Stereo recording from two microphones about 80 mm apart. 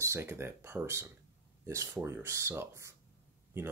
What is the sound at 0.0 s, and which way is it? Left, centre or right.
Speech, right.